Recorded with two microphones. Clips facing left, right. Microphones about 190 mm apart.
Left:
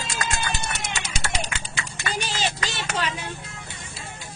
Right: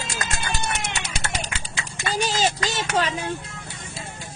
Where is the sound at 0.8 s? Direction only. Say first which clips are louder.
Right 2 dB; 65° right (ahead or behind).